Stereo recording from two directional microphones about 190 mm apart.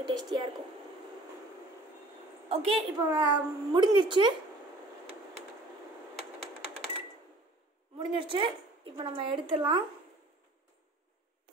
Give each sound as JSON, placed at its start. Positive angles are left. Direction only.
{"t": 0.0, "sound": "a woman's voice", "side_deg": -20}
{"t": 2.5, "sound": "a woman's voice", "side_deg": -30}
{"t": 3.1, "sound": "a woman's voice", "side_deg": -20}
{"t": 8.0, "sound": "a woman's voice", "side_deg": -25}